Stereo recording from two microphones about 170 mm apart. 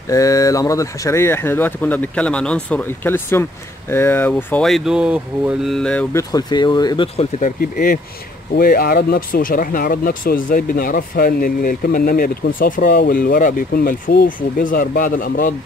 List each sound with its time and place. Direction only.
0.1 s speech: 20° left (ahead or behind)
4.6 s speech: centre (ahead or behind)
6.1 s speech: 25° left (ahead or behind)
7.2 s speech: 45° left (ahead or behind)